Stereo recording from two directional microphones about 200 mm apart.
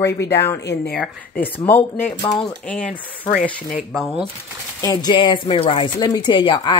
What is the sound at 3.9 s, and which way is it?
Speech, centre (ahead or behind).